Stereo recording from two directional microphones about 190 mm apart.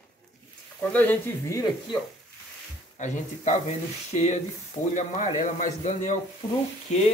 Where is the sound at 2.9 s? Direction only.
40° left (ahead or behind).